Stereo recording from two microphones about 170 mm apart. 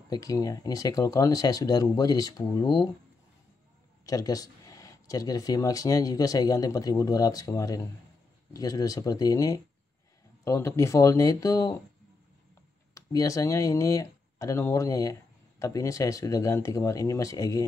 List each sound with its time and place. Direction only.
0.1 s speech: 20° left (ahead or behind)
4.0 s speech: 20° left (ahead or behind)
12.9 s speech: 20° left (ahead or behind)